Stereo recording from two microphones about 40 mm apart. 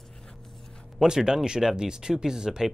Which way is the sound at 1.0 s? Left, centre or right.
Centre.